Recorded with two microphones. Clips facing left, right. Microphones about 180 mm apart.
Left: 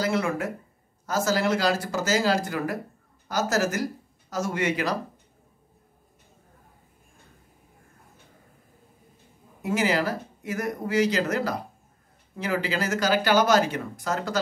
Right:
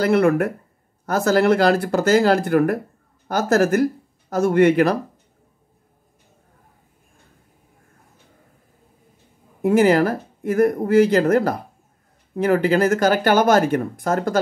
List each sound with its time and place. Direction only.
0.0 s speech: 60° right (ahead or behind)
9.6 s speech: 55° right (ahead or behind)